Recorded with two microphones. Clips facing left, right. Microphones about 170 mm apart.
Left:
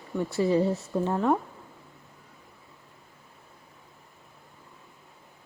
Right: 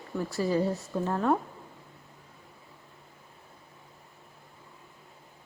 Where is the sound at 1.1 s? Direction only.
10° left (ahead or behind).